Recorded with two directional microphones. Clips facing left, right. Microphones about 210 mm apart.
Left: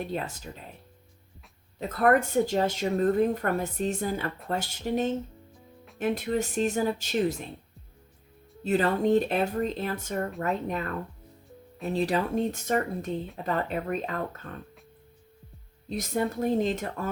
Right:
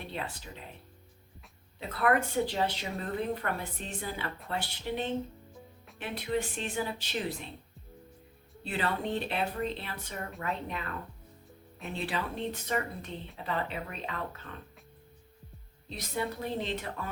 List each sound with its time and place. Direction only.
0.0 s speech: 45° left (ahead or behind)
1.9 s speech: 45° left (ahead or behind)
8.6 s speech: 45° left (ahead or behind)
11.9 s speech: 40° left (ahead or behind)
15.9 s speech: 45° left (ahead or behind)